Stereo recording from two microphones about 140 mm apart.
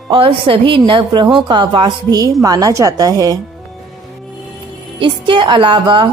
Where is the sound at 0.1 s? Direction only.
40° right (ahead or behind).